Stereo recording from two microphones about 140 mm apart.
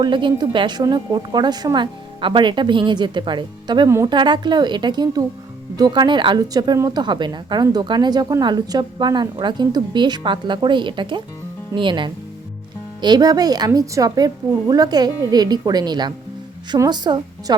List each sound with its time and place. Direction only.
0.0 s a woman's voice: 35° right (ahead or behind)
3.8 s a woman's voice: 20° right (ahead or behind)
4.1 s a woman's voice: 35° right (ahead or behind)